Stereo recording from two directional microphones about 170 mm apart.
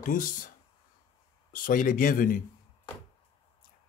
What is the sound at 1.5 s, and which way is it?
Speech, 55° left (ahead or behind).